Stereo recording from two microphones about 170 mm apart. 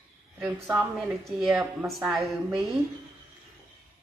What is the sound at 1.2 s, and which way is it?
A woman's voice, centre (ahead or behind).